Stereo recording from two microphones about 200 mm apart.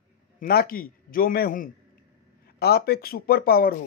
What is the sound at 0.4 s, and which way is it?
A man's voice, 45° left (ahead or behind).